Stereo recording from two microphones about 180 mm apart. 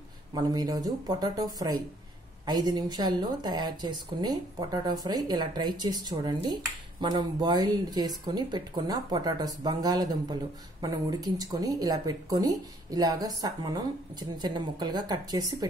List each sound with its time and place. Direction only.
0.3 s a woman's voice: 20° right (ahead or behind)